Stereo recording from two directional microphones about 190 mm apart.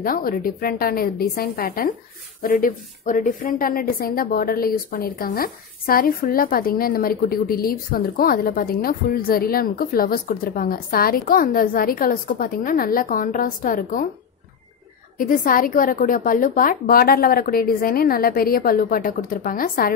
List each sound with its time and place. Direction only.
0.0 s a woman's voice: 50° left (ahead or behind)
15.1 s a woman's voice: 45° left (ahead or behind)